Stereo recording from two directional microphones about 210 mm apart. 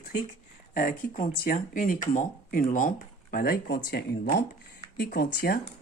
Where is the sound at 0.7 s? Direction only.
40° left (ahead or behind).